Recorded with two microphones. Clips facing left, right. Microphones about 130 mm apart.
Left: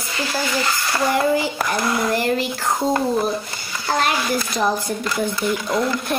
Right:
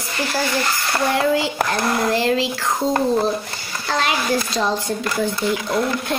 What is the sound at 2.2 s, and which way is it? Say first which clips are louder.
Speech: right 2 dB; 90° right.